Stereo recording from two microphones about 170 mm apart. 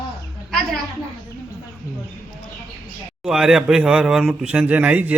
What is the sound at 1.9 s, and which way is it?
Speech, 20° left (ahead or behind).